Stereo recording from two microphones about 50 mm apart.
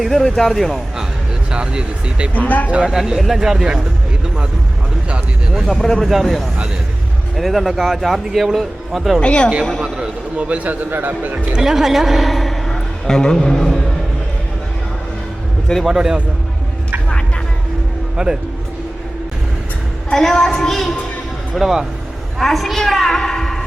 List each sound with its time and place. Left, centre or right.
0.0 s a woman's voice: centre
1.5 s speech: centre
2.5 s speech: left
2.9 s speech: centre
5.8 s a woman's voice: centre
9.2 s a woman's voice: left
10.0 s a man's voice: right
11.5 s a man's voice: centre
15.9 s speech: centre
18.2 s speech: centre
20.1 s a woman's voice: centre
21.5 s speech: centre
22.4 s a woman's voice: centre